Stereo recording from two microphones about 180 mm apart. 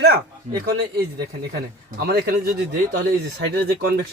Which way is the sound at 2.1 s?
60° right (ahead or behind).